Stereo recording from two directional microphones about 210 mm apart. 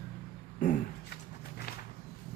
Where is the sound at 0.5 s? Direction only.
35° left (ahead or behind).